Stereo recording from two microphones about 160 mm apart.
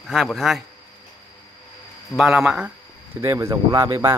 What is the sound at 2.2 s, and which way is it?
Speech, centre (ahead or behind).